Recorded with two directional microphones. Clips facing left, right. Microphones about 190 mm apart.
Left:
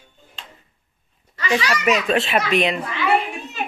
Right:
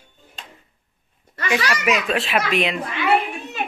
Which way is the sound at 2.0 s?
Centre (ahead or behind).